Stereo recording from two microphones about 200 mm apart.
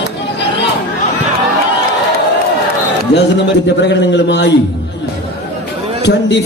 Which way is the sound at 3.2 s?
60° left (ahead or behind).